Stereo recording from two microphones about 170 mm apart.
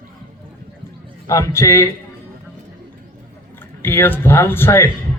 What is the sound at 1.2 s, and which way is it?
Speech, 15° left (ahead or behind).